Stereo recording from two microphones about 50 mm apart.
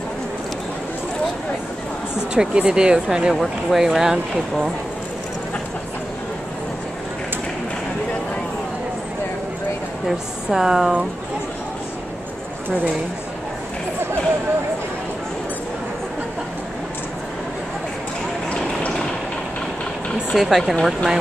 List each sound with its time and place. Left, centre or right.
2.1 s speech: centre
10.0 s speech: centre
18.5 s a sound: left
20.3 s speech: centre